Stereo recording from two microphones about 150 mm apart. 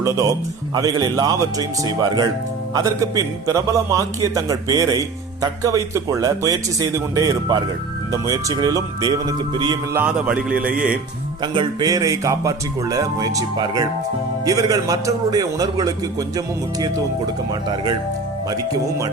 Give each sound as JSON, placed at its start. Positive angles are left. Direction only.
{"t": 0.0, "sound": "a man's voice", "side_deg": -20}
{"t": 9.9, "sound": "a man's voice", "side_deg": -10}
{"t": 11.5, "sound": "a man's voice", "side_deg": -25}